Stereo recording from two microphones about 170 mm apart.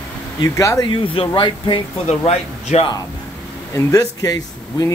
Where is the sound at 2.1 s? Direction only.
40° left (ahead or behind).